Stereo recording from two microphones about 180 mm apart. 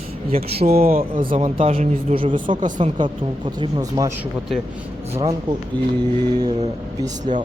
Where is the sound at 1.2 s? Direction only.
35° right (ahead or behind).